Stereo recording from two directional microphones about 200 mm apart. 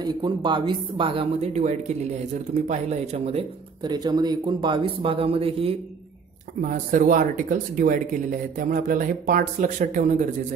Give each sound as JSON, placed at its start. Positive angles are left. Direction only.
{"t": 0.0, "sound": "speech", "side_deg": -25}
{"t": 6.6, "sound": "speech", "side_deg": -45}